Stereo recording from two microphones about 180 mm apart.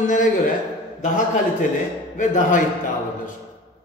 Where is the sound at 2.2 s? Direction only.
45° left (ahead or behind).